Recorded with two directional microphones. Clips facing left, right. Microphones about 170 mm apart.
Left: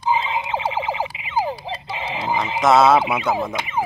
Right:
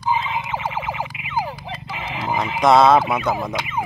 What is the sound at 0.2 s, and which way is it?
Music, 25° left (ahead or behind).